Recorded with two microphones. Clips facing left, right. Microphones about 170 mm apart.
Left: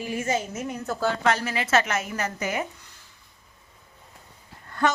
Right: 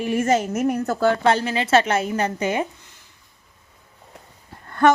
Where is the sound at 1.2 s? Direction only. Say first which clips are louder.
Right 5 dB; 30° right (ahead or behind).